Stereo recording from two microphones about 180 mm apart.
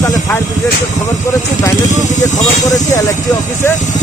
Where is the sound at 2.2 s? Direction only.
20° left (ahead or behind).